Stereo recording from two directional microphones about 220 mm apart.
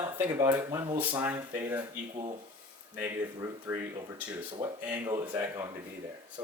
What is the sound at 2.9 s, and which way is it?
Speech, 10° right (ahead or behind).